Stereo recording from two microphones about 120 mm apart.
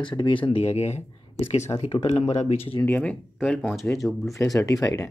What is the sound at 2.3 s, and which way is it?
Speech, 70° left (ahead or behind).